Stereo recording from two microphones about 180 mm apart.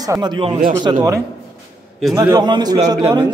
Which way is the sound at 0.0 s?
20° right (ahead or behind).